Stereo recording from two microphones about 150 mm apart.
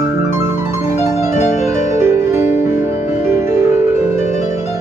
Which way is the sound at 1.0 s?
50° left (ahead or behind).